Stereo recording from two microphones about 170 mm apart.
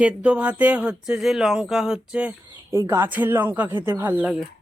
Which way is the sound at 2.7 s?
15° right (ahead or behind).